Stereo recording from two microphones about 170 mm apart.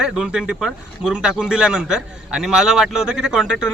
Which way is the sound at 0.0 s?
5° right (ahead or behind).